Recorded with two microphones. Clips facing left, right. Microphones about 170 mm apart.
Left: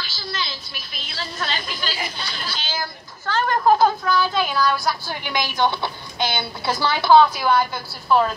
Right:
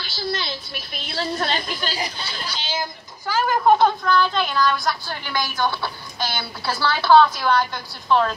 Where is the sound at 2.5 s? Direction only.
25° right (ahead or behind).